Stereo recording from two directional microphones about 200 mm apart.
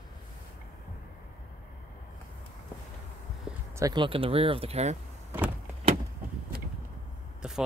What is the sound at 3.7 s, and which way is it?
Speech, 20° right (ahead or behind).